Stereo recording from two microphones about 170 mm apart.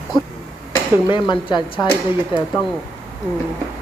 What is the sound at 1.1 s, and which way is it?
Speech, 30° left (ahead or behind).